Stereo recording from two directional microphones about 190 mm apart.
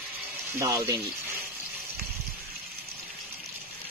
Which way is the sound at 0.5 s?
15° right (ahead or behind).